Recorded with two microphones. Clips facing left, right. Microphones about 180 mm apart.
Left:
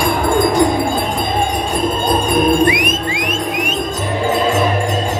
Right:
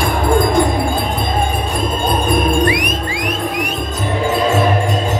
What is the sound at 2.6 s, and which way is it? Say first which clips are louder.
Music: left 2 dB; 20° left (ahead or behind).